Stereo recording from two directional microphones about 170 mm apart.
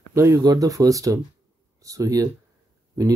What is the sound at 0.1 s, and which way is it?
Speech, 15° right (ahead or behind).